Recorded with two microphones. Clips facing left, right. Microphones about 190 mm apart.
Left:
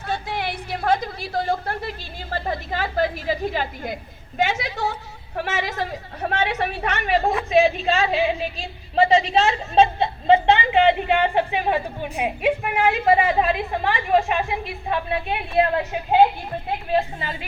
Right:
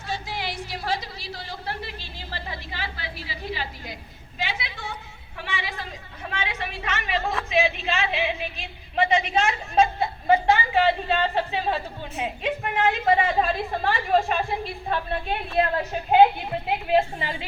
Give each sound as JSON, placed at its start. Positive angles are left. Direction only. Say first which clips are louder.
{"t": 0.1, "sound": "a woman's voice", "louder": "left 4 dB", "side_deg": 55}
{"t": 5.9, "sound": "speech", "louder": "left 9 dB", "side_deg": 60}
{"t": 7.5, "sound": "a woman's voice", "louder": "left 6 dB", "side_deg": 40}